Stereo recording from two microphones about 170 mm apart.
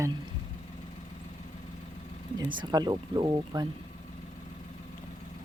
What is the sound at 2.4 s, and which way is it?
Speech, 25° right (ahead or behind).